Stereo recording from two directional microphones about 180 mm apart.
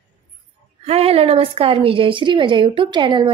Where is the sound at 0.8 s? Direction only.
35° right (ahead or behind).